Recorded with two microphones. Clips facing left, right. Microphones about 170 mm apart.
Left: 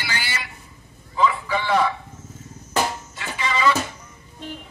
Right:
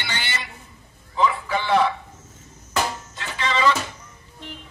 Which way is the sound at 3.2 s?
10° left (ahead or behind).